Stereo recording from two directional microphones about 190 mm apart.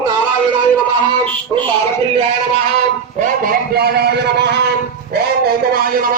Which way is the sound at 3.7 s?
60° right (ahead or behind).